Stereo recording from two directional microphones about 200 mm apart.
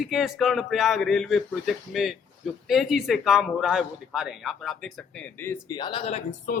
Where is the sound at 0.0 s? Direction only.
Centre (ahead or behind); by 6.2 s 30° left (ahead or behind).